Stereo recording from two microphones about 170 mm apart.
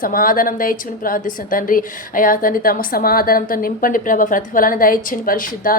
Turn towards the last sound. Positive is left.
turn(degrees=55)  # may be behind; listen again after turning